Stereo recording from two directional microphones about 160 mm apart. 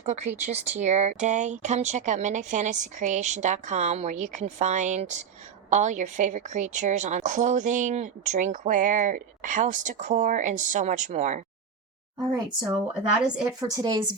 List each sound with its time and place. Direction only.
0.0 s a woman's voice: 45° right (ahead or behind)
13.6 s speech: 25° right (ahead or behind)